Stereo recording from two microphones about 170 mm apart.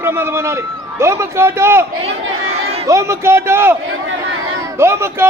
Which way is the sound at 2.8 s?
20° right (ahead or behind).